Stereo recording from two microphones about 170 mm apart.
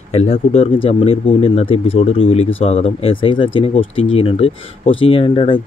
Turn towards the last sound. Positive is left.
turn(degrees=35)  # may be behind; listen again after turning